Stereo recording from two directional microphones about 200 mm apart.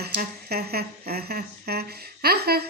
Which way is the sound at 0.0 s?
50° right (ahead or behind).